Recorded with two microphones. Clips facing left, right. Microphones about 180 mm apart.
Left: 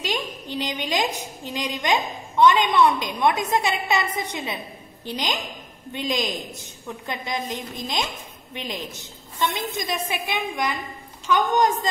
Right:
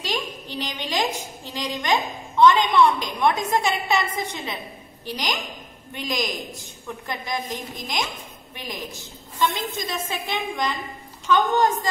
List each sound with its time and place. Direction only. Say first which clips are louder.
0.0 s a woman's voice: left 1 dB; 15° left (ahead or behind)
6.1 s a man's voice: right 1 dB; 15° right (ahead or behind)
6.6 s a woman's voice: left 1 dB; 20° left (ahead or behind)
8.5 s a woman's voice: left 2 dB; 20° left (ahead or behind)